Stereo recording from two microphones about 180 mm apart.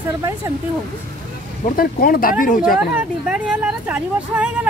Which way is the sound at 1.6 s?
55° left (ahead or behind).